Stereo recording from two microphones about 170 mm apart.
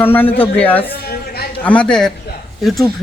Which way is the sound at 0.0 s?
10° left (ahead or behind).